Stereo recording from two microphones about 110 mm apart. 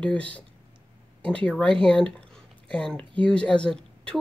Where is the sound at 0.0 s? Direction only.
10° left (ahead or behind).